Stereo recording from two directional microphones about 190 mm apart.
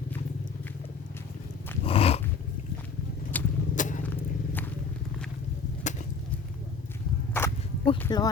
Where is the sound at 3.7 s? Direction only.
40° left (ahead or behind).